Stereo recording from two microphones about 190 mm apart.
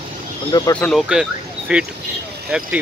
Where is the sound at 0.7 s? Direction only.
5° left (ahead or behind).